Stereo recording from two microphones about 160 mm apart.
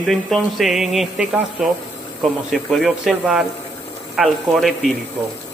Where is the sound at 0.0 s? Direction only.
Centre (ahead or behind).